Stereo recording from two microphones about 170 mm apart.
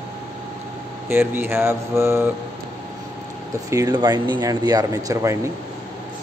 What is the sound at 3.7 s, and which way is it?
Speech, 20° right (ahead or behind).